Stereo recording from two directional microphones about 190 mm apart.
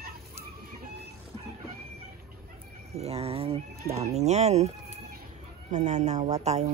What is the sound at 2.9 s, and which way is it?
Speech, 35° right (ahead or behind).